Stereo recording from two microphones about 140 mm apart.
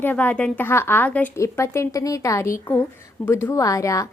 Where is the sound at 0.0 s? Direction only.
10° left (ahead or behind).